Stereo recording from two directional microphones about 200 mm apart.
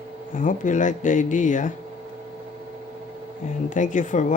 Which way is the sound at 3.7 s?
40° left (ahead or behind).